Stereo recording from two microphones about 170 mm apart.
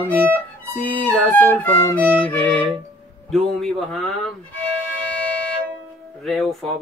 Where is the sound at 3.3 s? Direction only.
Centre (ahead or behind).